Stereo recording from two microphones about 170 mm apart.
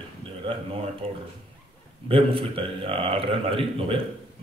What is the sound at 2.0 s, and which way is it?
Speech, 35° right (ahead or behind).